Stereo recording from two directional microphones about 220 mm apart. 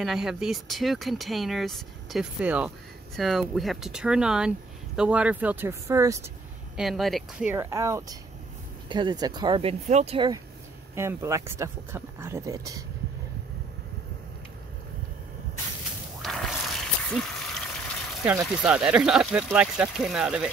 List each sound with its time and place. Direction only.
0.0 s speech: centre (ahead or behind)
6.8 s speech: centre (ahead or behind)
16.2 s a sound: centre (ahead or behind)
18.2 s speech: 10° right (ahead or behind)